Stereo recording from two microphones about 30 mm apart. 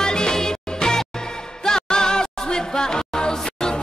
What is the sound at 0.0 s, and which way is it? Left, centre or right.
Music, left.